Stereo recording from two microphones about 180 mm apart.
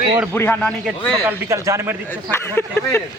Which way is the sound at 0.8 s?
Centre (ahead or behind).